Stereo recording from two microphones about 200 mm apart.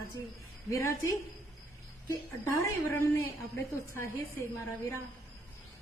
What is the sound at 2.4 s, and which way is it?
A woman's voice, 15° left (ahead or behind).